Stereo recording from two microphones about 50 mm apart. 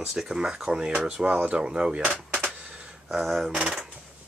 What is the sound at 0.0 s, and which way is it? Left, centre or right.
Speech, centre.